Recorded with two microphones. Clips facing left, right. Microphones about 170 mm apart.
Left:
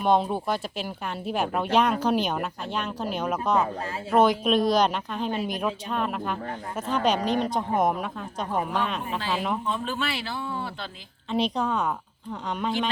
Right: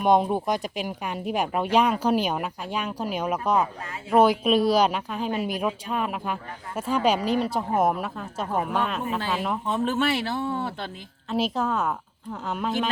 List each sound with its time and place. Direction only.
0.0 s a woman's voice: 15° right (ahead or behind)
9.8 s speech: 50° right (ahead or behind)
11.3 s a woman's voice: 5° right (ahead or behind)